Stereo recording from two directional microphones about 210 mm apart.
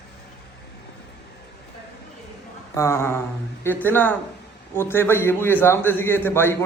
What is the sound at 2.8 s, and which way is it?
A man's voice, 10° left (ahead or behind).